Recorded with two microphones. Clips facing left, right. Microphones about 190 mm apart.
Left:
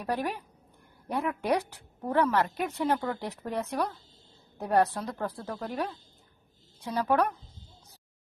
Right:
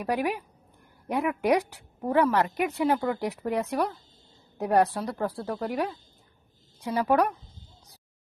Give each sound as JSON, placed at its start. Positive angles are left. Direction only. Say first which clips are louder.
{"t": 0.0, "sound": "a woman's voice", "louder": "right 4 dB", "side_deg": -10}